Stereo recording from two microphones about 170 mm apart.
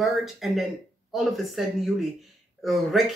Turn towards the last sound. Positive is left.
turn(degrees=0)  # may be behind; listen again after turning